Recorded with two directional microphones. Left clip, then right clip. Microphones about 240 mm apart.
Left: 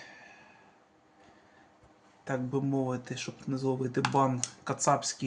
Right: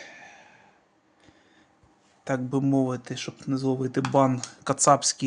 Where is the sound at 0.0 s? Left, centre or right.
Right.